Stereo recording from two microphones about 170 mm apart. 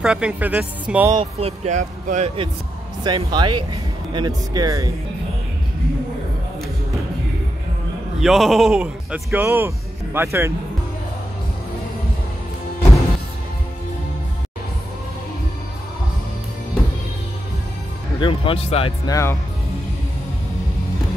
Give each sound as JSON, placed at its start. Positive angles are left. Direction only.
{"t": 0.0, "sound": "speech", "side_deg": -5}
{"t": 1.4, "sound": "speech", "side_deg": -40}
{"t": 3.0, "sound": "speech", "side_deg": -25}
{"t": 8.2, "sound": "speech", "side_deg": 0}
{"t": 18.2, "sound": "speech", "side_deg": 30}
{"t": 19.0, "sound": "speech", "side_deg": 20}